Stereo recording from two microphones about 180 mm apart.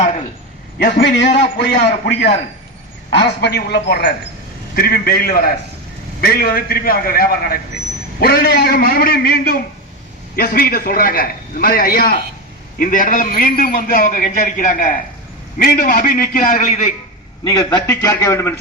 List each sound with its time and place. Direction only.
0.8 s a man's voice: 65° left (ahead or behind)
3.1 s a man's voice: 70° left (ahead or behind); by 16.9 s 40° left (ahead or behind)
17.4 s a man's voice: 20° left (ahead or behind)